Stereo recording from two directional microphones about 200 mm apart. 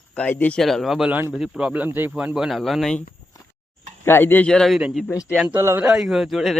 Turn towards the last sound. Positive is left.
turn(degrees=0)  # may be behind; listen again after turning